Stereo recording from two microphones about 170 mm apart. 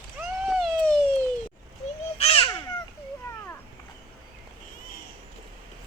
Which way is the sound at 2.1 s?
35° left (ahead or behind).